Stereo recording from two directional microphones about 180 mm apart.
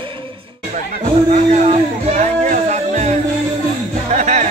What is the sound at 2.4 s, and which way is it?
Music, 40° right (ahead or behind).